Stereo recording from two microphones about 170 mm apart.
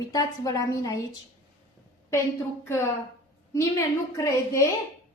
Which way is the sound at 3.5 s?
20° left (ahead or behind).